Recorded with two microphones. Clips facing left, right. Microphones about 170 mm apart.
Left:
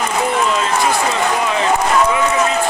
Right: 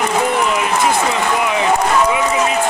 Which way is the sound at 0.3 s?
20° right (ahead or behind).